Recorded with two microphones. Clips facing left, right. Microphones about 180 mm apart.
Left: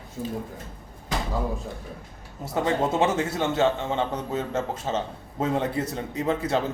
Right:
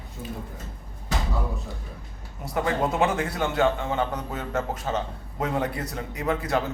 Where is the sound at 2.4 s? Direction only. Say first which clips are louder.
Left 1 dB; 25° left (ahead or behind).